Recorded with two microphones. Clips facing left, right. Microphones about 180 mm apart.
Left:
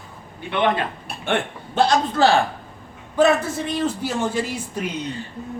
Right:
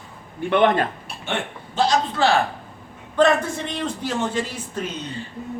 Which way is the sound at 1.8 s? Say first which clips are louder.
Left 2 dB; 60° left (ahead or behind).